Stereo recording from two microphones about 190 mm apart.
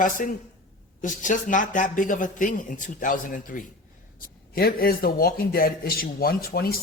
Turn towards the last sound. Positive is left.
turn(degrees=50)  # may be behind; listen again after turning